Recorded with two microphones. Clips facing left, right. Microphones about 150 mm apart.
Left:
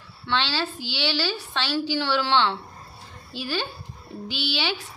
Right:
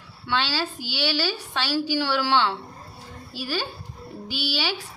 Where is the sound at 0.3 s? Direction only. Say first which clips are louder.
Even; 10° right (ahead or behind).